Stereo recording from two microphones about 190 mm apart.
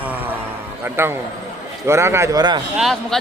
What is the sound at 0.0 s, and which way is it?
Music, 10° right (ahead or behind).